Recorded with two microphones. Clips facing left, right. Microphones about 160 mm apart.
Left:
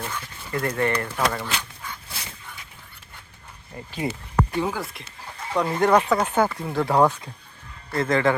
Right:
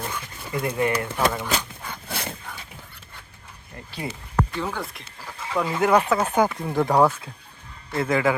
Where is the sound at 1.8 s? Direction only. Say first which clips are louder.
Right 5 dB; 60° right (ahead or behind).